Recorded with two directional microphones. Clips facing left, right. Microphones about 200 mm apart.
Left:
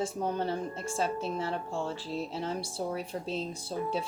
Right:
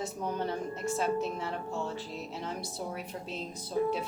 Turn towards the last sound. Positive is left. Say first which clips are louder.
# right 3 dB
turn(degrees=30)  # may be behind; listen again after turning